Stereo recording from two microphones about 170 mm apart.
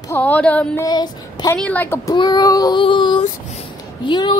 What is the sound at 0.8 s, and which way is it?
Child singing, 25° left (ahead or behind).